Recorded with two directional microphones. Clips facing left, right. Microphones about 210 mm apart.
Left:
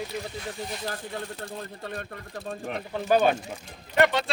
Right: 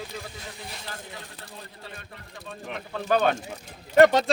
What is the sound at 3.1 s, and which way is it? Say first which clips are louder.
Speech: left 1 dB; 10° left (ahead or behind).